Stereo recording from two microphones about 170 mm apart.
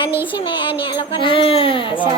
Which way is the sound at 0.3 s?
30° left (ahead or behind).